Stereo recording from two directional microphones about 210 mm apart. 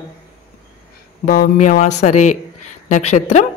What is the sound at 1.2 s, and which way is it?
A woman's voice, 40° left (ahead or behind).